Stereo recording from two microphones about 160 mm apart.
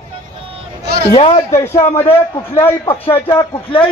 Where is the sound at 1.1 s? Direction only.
35° left (ahead or behind).